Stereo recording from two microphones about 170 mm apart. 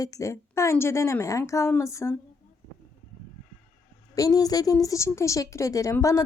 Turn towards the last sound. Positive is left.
turn(degrees=15)  # may be behind; listen again after turning